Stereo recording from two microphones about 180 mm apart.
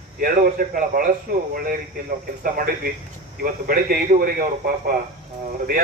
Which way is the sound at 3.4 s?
50° right (ahead or behind).